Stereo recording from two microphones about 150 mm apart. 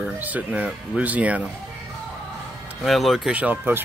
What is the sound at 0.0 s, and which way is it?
Speech, 10° right (ahead or behind).